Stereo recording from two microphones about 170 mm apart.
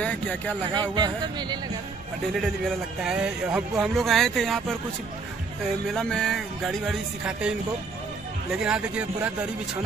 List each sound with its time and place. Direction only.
0.0 s speech: 10° left (ahead or behind)
0.7 s speech: 25° right (ahead or behind)
2.3 s speech: centre (ahead or behind)
5.9 s speech: 5° left (ahead or behind)